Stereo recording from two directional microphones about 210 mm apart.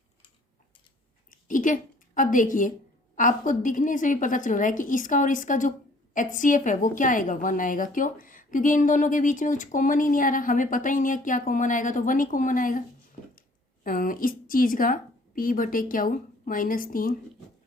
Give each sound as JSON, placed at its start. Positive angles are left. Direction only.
{"t": 1.3, "sound": "a woman's voice", "side_deg": 40}
{"t": 13.8, "sound": "a woman's voice", "side_deg": 40}